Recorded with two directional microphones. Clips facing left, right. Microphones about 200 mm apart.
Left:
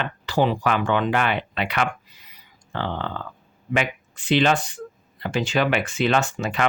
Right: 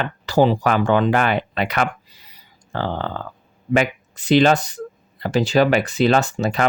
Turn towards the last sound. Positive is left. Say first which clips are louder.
# right 4 dB
turn(degrees=-35)  # may be behind; listen again after turning